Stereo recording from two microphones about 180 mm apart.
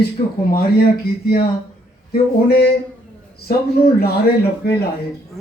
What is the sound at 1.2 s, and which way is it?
Speech, 55° left (ahead or behind).